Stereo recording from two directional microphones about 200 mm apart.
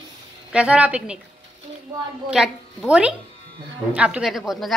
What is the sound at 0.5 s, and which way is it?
Speech, 5° right (ahead or behind).